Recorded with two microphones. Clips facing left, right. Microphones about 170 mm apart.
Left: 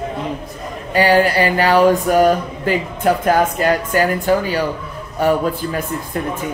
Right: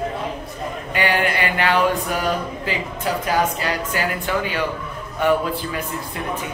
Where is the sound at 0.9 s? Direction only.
35° left (ahead or behind).